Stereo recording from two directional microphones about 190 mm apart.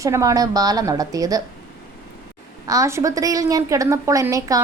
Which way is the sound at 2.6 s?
15° right (ahead or behind).